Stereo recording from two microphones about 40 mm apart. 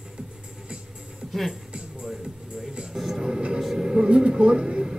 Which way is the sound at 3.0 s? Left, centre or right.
Centre.